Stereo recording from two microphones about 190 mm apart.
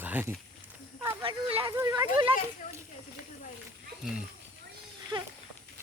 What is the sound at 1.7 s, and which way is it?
Speech, 20° right (ahead or behind).